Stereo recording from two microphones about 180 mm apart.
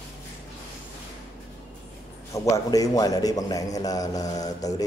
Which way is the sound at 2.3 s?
20° left (ahead or behind).